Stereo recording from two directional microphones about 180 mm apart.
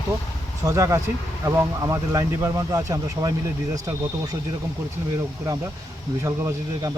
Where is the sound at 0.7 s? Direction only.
15° right (ahead or behind).